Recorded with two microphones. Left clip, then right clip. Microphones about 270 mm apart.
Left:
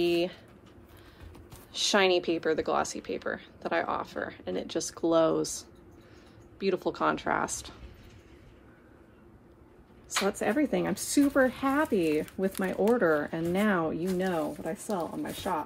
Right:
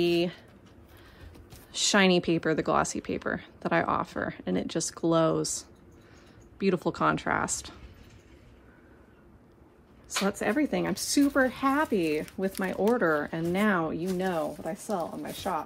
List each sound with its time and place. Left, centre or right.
0.0 s speech: right
1.7 s a woman's voice: right
10.0 s a woman's voice: right